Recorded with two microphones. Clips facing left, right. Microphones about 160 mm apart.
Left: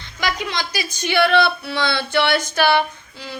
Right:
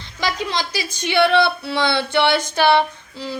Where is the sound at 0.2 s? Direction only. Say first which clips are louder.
Right 1 dB; 30° right (ahead or behind).